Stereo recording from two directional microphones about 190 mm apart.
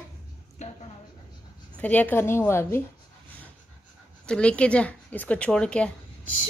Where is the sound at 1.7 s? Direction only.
5° left (ahead or behind).